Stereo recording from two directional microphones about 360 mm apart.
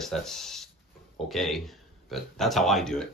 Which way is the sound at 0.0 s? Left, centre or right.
Centre.